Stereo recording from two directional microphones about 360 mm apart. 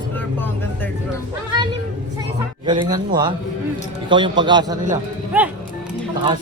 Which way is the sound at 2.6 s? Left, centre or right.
Centre.